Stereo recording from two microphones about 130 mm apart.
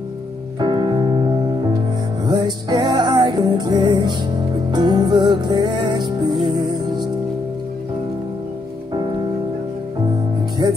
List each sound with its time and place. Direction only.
0.6 s music: 35° right (ahead or behind)
8.9 s music: 40° right (ahead or behind)
10.6 s music: 30° right (ahead or behind)